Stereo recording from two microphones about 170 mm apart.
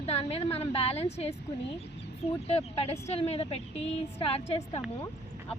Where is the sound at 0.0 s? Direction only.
35° left (ahead or behind).